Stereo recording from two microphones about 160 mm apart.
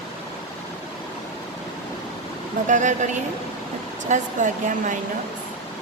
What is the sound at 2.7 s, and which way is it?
A woman's voice, 50° right (ahead or behind).